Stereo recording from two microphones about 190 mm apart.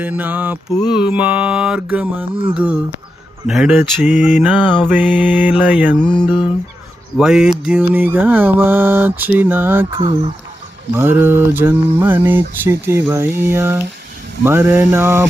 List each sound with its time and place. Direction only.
0.0 s speech: 10° right (ahead or behind)
6.2 s a sound: 25° left (ahead or behind)
7.2 s speech: 5° right (ahead or behind)
10.9 s speech: 10° right (ahead or behind)